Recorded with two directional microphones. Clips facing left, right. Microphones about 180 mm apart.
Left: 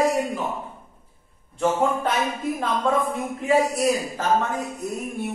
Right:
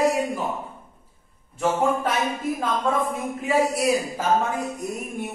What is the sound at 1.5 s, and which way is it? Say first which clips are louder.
Speech: left 1 dB; centre (ahead or behind).